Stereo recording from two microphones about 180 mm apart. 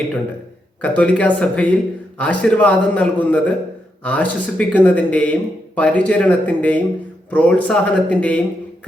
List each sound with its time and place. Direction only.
0.8 s a man's voice: 10° left (ahead or behind)